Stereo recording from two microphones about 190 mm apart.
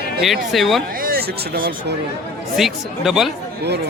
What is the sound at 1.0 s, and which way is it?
Speech, 55° right (ahead or behind).